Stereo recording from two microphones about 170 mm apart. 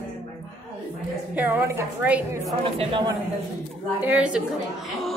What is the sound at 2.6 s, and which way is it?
Speech, 30° right (ahead or behind).